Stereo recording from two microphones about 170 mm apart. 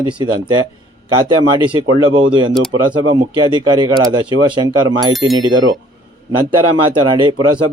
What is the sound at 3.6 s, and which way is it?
Speech, 25° right (ahead or behind).